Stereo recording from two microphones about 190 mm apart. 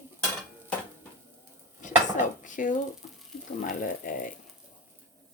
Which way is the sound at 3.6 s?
45° left (ahead or behind).